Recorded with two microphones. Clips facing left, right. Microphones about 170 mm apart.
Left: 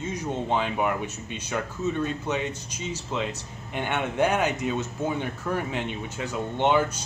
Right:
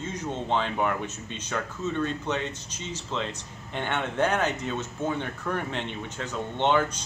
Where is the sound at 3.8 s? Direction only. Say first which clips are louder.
Left 2 dB; 10° left (ahead or behind).